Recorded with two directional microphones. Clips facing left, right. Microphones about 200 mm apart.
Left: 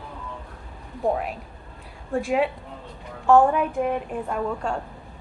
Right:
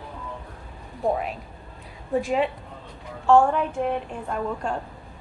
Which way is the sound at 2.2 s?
5° left (ahead or behind).